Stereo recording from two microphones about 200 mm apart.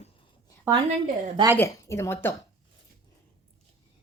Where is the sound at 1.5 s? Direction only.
15° left (ahead or behind).